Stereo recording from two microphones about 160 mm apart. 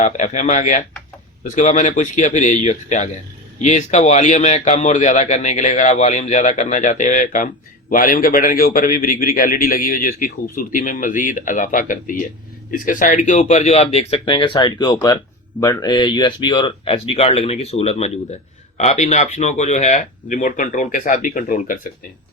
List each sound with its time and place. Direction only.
0.0 s a man's voice: 50° left (ahead or behind)